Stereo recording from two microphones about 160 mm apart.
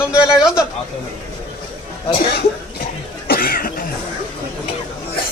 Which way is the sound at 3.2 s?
70° left (ahead or behind).